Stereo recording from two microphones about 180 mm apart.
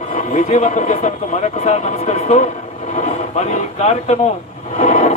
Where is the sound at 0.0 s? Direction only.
40° left (ahead or behind).